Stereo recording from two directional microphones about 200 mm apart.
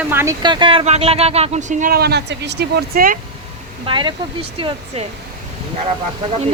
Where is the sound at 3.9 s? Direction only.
20° right (ahead or behind).